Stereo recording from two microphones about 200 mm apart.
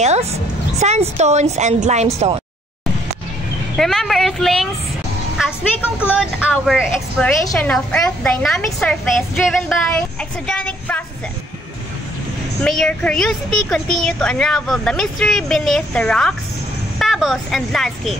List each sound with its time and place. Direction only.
0.0 s a woman's voice: 35° right (ahead or behind)
3.7 s a child's voice: centre (ahead or behind)
6.1 s a child's voice: centre (ahead or behind)
12.6 s a child's voice: 5° left (ahead or behind)